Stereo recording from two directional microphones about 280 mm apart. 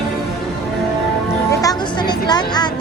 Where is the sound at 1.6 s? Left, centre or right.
Centre.